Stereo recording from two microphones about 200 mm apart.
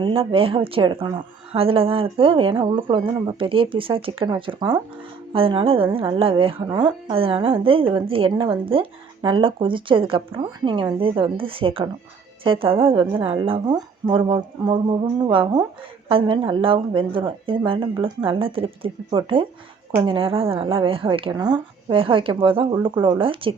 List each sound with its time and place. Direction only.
0.0 s speech: 25° right (ahead or behind)